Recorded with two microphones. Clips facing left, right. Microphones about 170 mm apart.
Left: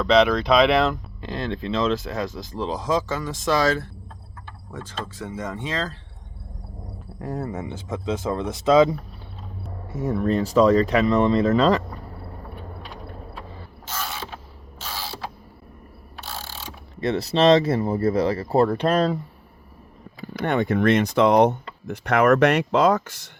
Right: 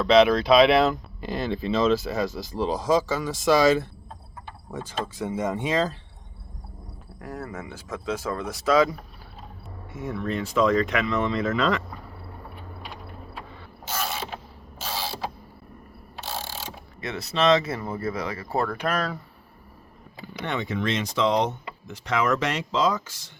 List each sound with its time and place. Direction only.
0.0 s speech: centre (ahead or behind)
4.4 s a sound: 10° right (ahead or behind)
7.2 s speech: 25° left (ahead or behind)
9.9 s speech: 40° left (ahead or behind)
17.0 s speech: 35° left (ahead or behind)
20.2 s speech: 50° left (ahead or behind)